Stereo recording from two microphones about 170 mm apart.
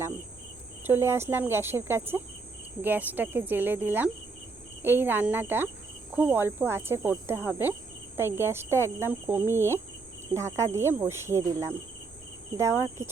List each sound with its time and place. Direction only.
0.9 s speech: 15° right (ahead or behind)